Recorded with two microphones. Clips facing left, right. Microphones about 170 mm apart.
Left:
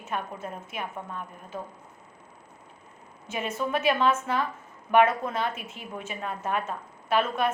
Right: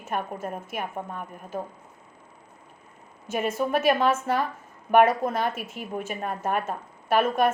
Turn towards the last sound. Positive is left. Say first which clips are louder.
# right 4 dB
turn(degrees=-45)  # may be behind; listen again after turning